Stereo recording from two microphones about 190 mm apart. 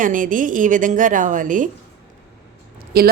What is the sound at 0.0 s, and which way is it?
Speech, 45° right (ahead or behind).